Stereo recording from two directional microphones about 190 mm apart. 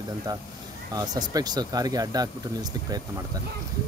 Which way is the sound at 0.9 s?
20° right (ahead or behind).